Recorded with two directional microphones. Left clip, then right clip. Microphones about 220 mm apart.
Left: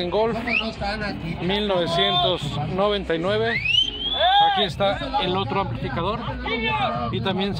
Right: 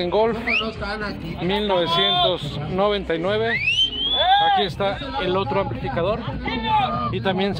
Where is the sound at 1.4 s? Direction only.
5° right (ahead or behind).